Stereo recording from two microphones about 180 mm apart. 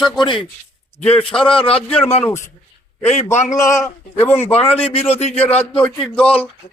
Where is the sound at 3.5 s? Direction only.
20° left (ahead or behind).